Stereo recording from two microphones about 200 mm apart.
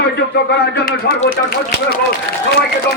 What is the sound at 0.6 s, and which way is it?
Speech, 50° left (ahead or behind).